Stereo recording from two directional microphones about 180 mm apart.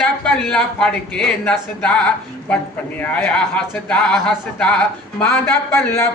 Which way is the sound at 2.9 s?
5° left (ahead or behind).